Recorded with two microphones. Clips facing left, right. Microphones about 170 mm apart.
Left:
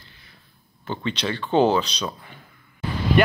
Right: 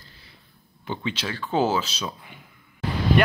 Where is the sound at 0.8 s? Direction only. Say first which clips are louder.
Left 3 dB; 10° right (ahead or behind).